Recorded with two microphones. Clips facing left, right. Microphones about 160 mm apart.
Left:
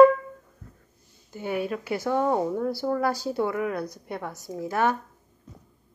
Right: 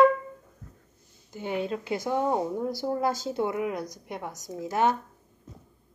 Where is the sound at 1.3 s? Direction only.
20° right (ahead or behind).